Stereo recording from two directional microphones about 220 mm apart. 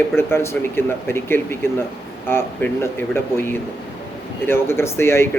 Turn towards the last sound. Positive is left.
turn(degrees=10)  # may be behind; listen again after turning